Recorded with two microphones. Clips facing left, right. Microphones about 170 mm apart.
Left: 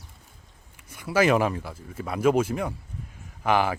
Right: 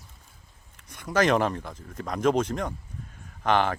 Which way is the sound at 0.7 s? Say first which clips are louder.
Left 1 dB; 10° left (ahead or behind).